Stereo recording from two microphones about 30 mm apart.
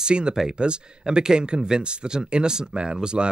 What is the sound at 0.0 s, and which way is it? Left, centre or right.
Speech, right.